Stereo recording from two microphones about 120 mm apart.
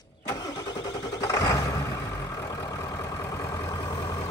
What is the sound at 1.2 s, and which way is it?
Vehicle, 30° left (ahead or behind).